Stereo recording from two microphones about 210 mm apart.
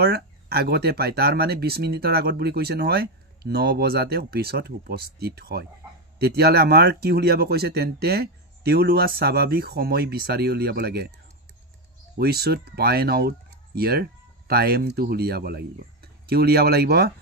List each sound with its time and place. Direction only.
0.0 s speech: 50° right (ahead or behind)
12.2 s speech: 50° right (ahead or behind)